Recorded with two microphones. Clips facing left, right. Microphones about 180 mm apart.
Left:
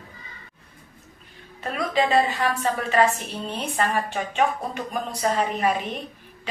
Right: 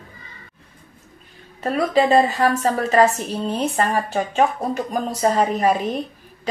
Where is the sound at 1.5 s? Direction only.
40° right (ahead or behind).